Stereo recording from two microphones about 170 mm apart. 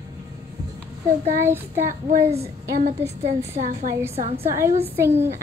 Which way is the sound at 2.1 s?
40° right (ahead or behind).